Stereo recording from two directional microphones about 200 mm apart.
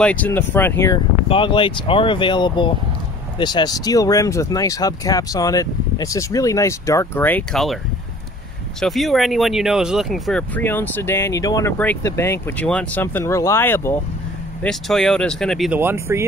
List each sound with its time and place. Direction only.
0.0 s speech: 5° left (ahead or behind)
1.3 s speech: 25° left (ahead or behind); by 7.8 s centre (ahead or behind)
8.8 s speech: centre (ahead or behind)
15.8 s speech: 10° right (ahead or behind)